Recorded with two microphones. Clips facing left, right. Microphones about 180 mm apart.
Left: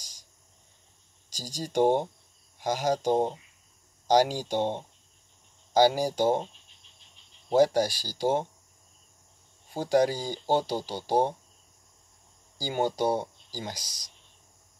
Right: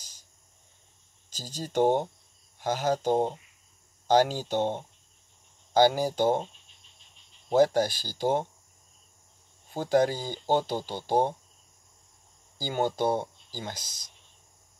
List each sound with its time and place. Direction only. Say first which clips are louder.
0.0 s cricket: left 2 dB; 10° left (ahead or behind)
1.3 s speech: even; 10° left (ahead or behind)
7.5 s speech: even; 10° left (ahead or behind)
9.8 s speech: even; 10° left (ahead or behind)
12.5 s speech: even; 10° left (ahead or behind)